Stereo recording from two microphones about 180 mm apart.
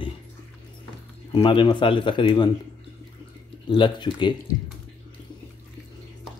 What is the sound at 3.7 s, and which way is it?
Speech, 25° left (ahead or behind).